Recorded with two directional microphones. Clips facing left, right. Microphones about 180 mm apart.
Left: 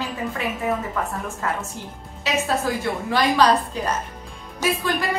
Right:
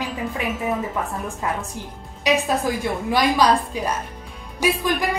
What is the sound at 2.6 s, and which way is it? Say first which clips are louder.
Speech: right 1 dB; 10° right (ahead or behind).